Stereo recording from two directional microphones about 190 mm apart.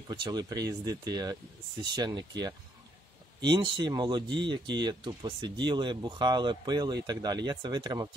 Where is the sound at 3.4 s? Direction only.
25° right (ahead or behind).